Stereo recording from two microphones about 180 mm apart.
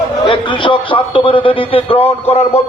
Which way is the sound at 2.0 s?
10° left (ahead or behind).